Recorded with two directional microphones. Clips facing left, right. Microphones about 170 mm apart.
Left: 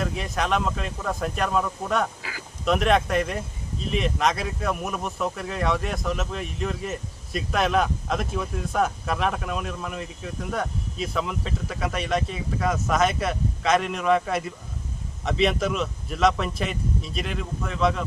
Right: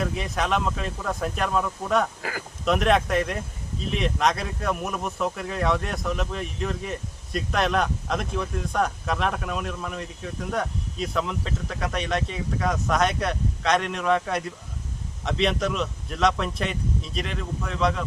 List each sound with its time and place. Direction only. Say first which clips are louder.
0.0 s speech: even; centre (ahead or behind)